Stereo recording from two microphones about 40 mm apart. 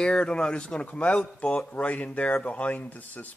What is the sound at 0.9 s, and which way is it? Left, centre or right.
Speech, left.